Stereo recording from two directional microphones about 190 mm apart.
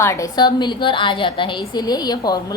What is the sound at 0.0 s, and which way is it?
A woman's voice, 15° left (ahead or behind).